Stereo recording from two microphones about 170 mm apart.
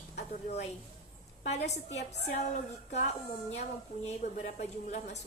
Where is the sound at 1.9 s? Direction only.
40° left (ahead or behind).